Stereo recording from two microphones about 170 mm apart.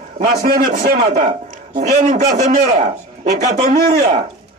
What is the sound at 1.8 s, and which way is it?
A man's voice, 40° right (ahead or behind).